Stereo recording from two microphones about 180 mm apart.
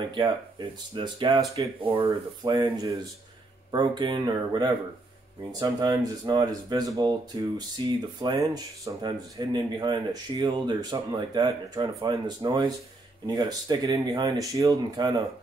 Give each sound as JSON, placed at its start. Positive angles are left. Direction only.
{"t": 0.1, "sound": "speech", "side_deg": -25}